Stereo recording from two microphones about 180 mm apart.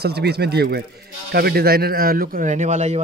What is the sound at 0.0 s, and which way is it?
Speech, 65° right (ahead or behind).